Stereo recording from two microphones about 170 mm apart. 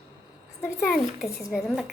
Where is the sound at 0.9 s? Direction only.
Centre (ahead or behind).